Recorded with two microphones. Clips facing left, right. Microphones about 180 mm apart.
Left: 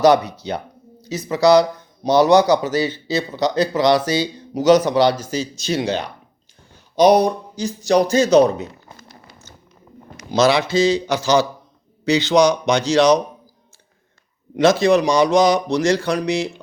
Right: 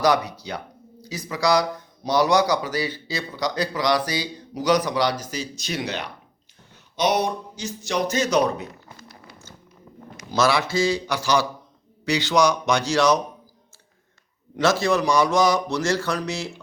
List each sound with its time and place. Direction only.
0.0 s a man's voice: 25° left (ahead or behind)
9.0 s a sound: 25° left (ahead or behind)
10.3 s a man's voice: 20° left (ahead or behind)
14.5 s speech: 20° left (ahead or behind)